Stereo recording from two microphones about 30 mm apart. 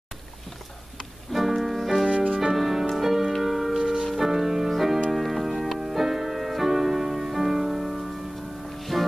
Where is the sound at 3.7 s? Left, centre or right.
Right.